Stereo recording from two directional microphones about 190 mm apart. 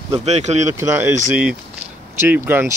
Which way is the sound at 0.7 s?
15° right (ahead or behind).